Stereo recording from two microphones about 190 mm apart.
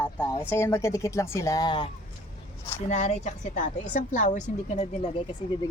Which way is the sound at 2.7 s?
35° left (ahead or behind).